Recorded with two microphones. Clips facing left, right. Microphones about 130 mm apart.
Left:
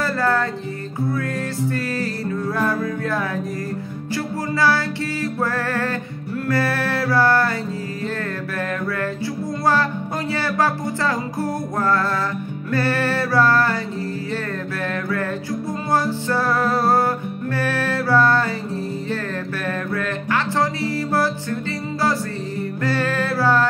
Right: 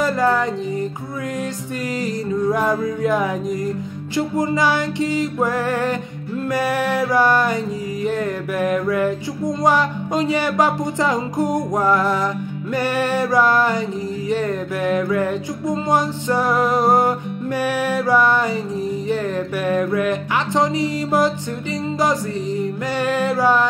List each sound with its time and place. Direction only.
0.0 s music: 15° right (ahead or behind)
2.0 s music: 15° right (ahead or behind)
8.5 s music: 15° right (ahead or behind)
19.6 s music: 15° right (ahead or behind)
22.6 s music: 15° right (ahead or behind)